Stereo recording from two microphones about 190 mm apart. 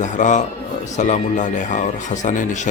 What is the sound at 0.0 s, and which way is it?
A man's voice, 40° left (ahead or behind).